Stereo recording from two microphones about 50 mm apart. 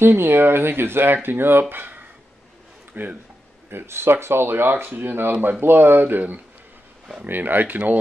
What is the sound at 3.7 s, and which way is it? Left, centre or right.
Speech, right.